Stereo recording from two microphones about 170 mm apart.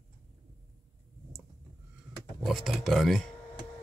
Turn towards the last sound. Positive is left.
turn(degrees=0)  # may be behind; listen again after turning